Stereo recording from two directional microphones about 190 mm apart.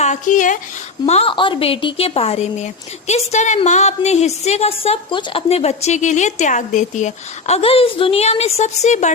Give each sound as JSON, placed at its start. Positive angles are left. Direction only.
{"t": 0.0, "sound": "a woman's voice", "side_deg": 40}